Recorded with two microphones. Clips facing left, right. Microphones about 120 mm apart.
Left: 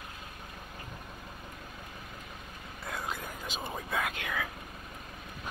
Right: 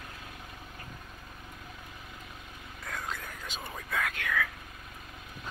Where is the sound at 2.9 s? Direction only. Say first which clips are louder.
Left 1 dB; 15° left (ahead or behind).